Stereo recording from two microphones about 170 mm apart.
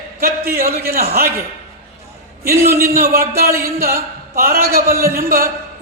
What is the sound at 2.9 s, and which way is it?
A man's voice, 60° right (ahead or behind).